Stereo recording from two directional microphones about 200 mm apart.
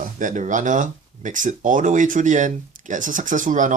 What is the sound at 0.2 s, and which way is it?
Speech, 40° right (ahead or behind).